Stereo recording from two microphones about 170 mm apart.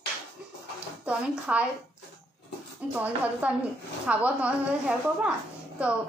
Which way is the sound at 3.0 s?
10° right (ahead or behind).